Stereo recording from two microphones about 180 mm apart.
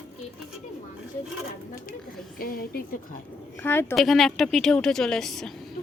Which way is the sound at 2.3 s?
55° left (ahead or behind).